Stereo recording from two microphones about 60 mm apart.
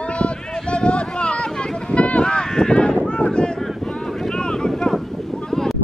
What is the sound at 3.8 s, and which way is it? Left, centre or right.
Boat, centre.